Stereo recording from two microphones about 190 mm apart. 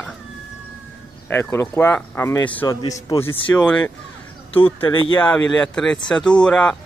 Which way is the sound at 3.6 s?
5° left (ahead or behind).